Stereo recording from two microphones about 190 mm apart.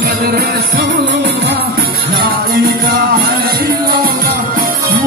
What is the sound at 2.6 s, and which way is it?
Music, 50° right (ahead or behind).